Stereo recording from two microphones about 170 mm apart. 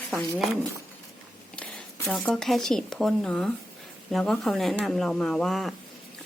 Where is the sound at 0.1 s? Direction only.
Centre (ahead or behind).